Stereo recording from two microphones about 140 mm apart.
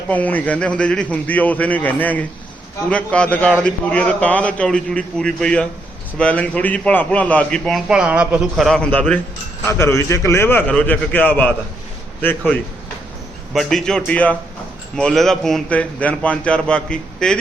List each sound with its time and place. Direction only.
0.1 s a man's voice: 10° left (ahead or behind)
7.9 s a man's voice: 10° right (ahead or behind); by 9.2 s 10° left (ahead or behind)
9.6 s a man's voice: 20° left (ahead or behind)
13.5 s a man's voice: centre (ahead or behind)